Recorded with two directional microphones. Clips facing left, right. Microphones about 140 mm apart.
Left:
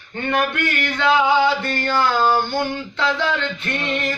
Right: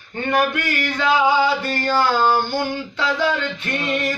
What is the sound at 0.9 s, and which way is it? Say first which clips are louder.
Speech: left 1 dB; 10° right (ahead or behind).